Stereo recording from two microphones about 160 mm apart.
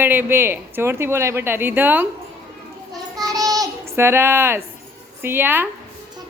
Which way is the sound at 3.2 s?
25° right (ahead or behind).